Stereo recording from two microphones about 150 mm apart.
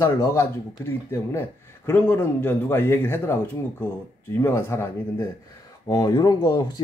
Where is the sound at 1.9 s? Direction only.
15° left (ahead or behind).